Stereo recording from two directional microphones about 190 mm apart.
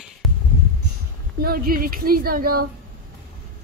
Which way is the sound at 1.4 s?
50° right (ahead or behind).